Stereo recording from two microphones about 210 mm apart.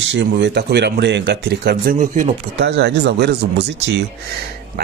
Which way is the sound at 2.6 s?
55° right (ahead or behind).